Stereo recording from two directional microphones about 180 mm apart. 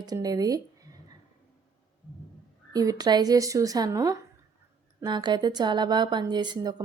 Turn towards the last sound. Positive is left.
turn(degrees=-25)  # may be behind; listen again after turning